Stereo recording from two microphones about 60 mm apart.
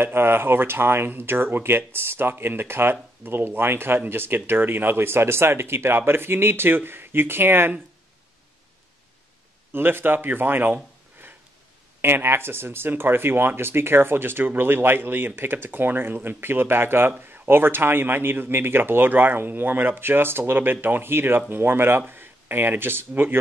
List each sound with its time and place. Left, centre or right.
0.0 s speech: right
9.7 s speech: right